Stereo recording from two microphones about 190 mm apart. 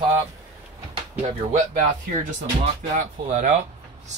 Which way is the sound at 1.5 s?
45° right (ahead or behind).